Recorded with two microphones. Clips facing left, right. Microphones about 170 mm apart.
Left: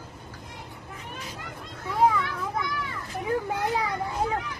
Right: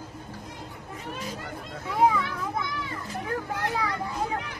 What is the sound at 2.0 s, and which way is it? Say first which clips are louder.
Children playing: even; centre (ahead or behind).